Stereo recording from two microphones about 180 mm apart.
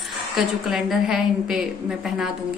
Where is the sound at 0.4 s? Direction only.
Centre (ahead or behind).